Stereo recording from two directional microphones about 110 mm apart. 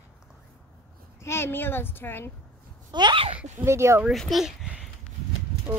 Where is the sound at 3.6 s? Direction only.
25° right (ahead or behind).